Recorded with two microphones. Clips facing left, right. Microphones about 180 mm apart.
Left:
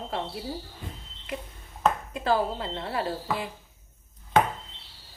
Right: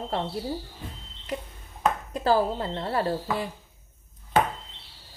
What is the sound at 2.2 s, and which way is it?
Speech, 40° right (ahead or behind).